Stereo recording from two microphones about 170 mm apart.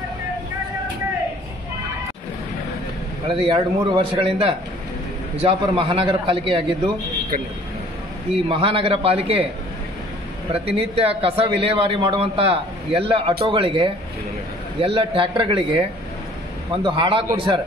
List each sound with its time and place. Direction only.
3.3 s a man's voice: 30° right (ahead or behind)
8.5 s a man's voice: 30° right (ahead or behind)
10.5 s a man's voice: 35° right (ahead or behind)